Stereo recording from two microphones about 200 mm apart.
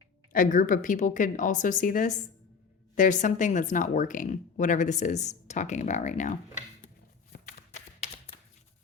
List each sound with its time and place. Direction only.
0.3 s speech: 40° left (ahead or behind)
7.3 s shuffling cards: 45° left (ahead or behind)